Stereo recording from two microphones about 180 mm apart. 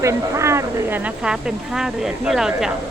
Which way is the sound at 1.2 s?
5° right (ahead or behind).